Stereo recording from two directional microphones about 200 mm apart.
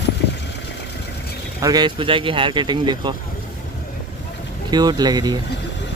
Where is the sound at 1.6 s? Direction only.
20° right (ahead or behind).